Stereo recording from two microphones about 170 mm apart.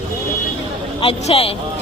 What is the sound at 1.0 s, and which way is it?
Speech, 35° left (ahead or behind).